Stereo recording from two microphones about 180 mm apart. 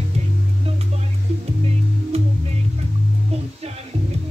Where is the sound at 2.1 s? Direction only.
35° right (ahead or behind).